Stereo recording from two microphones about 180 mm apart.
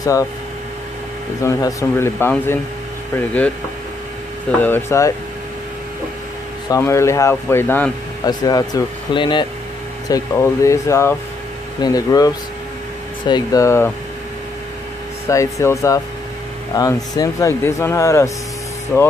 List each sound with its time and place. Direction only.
1.4 s speech: 20° left (ahead or behind)
4.6 s speech: 10° left (ahead or behind)
6.7 s speech: 15° left (ahead or behind)
15.3 s speech: 15° left (ahead or behind)